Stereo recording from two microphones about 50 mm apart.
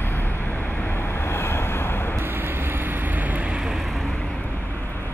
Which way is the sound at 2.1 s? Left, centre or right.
Right.